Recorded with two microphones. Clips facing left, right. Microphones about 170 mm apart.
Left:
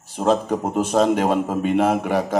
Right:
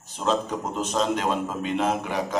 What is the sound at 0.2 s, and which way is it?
Speech, 55° left (ahead or behind).